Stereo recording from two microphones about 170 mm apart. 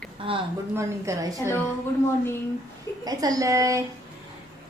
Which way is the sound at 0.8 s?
20° right (ahead or behind).